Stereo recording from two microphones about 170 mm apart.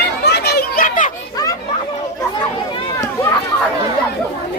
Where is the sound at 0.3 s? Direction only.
75° left (ahead or behind); by 1.1 s 50° left (ahead or behind).